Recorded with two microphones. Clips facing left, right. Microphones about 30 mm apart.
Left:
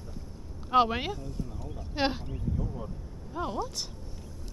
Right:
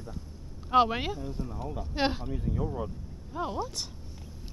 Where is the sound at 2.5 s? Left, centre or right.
Right.